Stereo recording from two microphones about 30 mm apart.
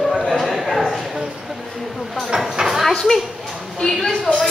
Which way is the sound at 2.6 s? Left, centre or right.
Centre.